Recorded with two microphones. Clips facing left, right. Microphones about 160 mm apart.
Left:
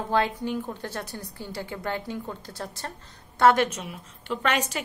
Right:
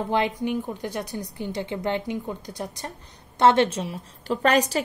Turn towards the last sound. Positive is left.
turn(degrees=-35)  # may be behind; listen again after turning